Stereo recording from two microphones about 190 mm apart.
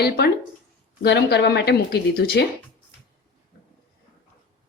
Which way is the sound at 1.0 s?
65° left (ahead or behind).